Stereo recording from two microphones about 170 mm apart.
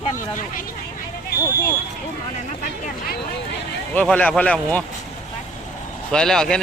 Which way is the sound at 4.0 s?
5° left (ahead or behind).